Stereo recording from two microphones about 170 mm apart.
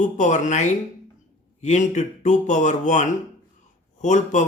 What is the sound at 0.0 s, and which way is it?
A man's voice, 45° left (ahead or behind).